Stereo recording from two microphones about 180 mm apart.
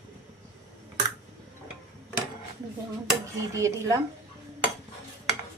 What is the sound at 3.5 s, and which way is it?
Speech, 15° right (ahead or behind).